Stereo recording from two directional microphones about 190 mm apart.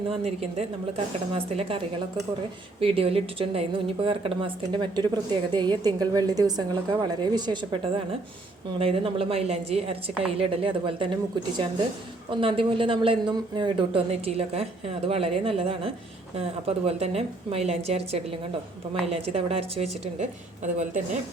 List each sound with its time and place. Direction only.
0.1 s a woman's voice: 35° right (ahead or behind)
12.3 s a woman's voice: 25° right (ahead or behind)